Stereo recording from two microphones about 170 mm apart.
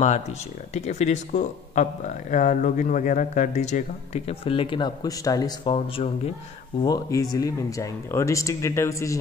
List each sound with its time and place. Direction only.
0.7 s speech: 40° left (ahead or behind)
6.8 s speech: 20° left (ahead or behind)